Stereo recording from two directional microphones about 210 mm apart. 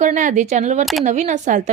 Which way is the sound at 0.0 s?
35° right (ahead or behind).